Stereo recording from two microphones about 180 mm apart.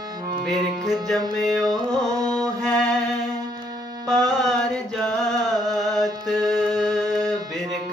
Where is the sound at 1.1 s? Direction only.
20° right (ahead or behind).